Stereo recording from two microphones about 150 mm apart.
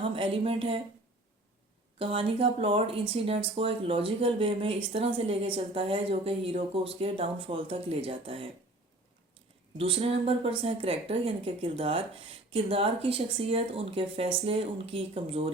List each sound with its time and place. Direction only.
0.0 s speech: 35° right (ahead or behind)
2.0 s speech: 40° right (ahead or behind)
9.7 s speech: 40° right (ahead or behind)